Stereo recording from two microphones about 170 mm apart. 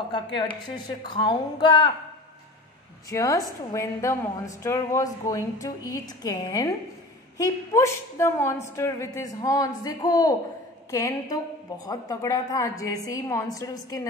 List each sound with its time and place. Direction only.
0.1 s a woman's voice: 25° left (ahead or behind)
3.1 s a woman's voice: 20° left (ahead or behind)